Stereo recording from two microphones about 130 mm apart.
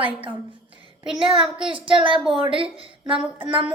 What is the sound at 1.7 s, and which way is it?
A woman's voice, 45° right (ahead or behind).